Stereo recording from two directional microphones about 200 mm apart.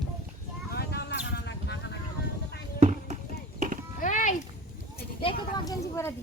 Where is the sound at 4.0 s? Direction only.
40° left (ahead or behind).